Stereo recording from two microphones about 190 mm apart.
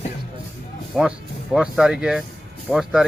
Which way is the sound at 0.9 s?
Centre (ahead or behind).